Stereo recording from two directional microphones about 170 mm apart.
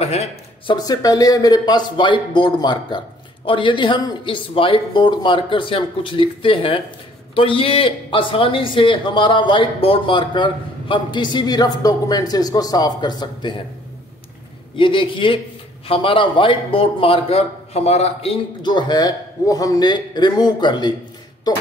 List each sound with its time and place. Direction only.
0.0 s speech: 40° left (ahead or behind)
0.7 s a man's voice: 20° left (ahead or behind)
14.8 s a man's voice: 30° left (ahead or behind)